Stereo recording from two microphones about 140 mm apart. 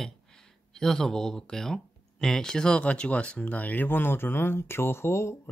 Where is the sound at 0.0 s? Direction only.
5° left (ahead or behind).